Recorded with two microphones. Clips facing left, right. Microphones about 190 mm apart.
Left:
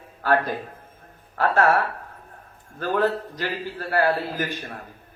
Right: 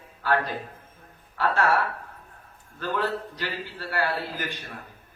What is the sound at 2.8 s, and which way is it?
Speech, 50° left (ahead or behind).